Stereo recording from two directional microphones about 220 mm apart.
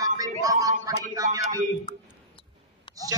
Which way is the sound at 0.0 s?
15° right (ahead or behind).